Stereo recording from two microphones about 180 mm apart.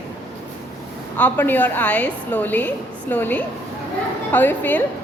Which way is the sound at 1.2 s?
10° left (ahead or behind).